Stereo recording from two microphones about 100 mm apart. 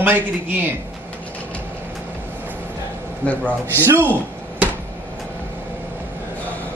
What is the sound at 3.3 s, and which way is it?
Speech, 15° left (ahead or behind).